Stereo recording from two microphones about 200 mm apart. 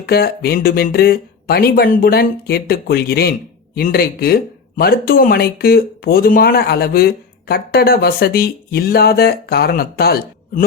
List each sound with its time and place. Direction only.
0.0 s speech: 50° left (ahead or behind)